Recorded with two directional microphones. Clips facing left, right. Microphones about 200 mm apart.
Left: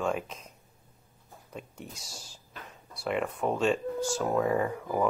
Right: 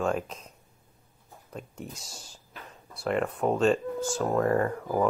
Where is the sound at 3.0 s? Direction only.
5° left (ahead or behind).